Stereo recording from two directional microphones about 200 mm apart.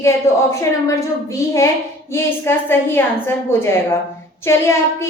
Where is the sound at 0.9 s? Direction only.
15° left (ahead or behind).